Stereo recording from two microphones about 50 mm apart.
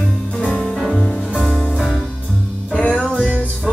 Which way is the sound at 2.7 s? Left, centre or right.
Left.